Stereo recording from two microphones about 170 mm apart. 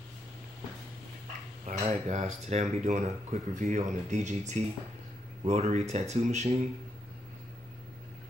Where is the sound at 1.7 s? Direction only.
45° right (ahead or behind).